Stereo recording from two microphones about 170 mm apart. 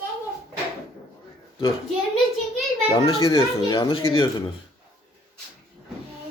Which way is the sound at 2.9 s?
20° left (ahead or behind).